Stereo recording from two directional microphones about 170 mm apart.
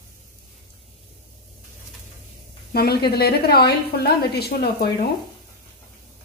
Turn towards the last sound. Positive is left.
turn(degrees=70)  # may be behind; listen again after turning